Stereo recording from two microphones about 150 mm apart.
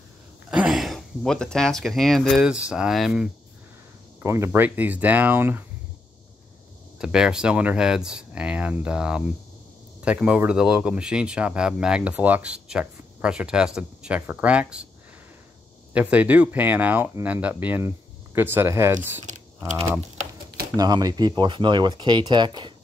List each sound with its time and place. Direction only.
0.5 s speech: 5° right (ahead or behind)
4.2 s speech: 15° right (ahead or behind)
7.0 s speech: 5° right (ahead or behind)
15.9 s speech: 10° right (ahead or behind)
19.3 s typing: 55° right (ahead or behind)
20.7 s speech: 25° right (ahead or behind)